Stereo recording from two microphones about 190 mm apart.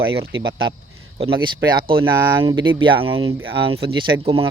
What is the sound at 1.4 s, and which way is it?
Speech, 25° right (ahead or behind).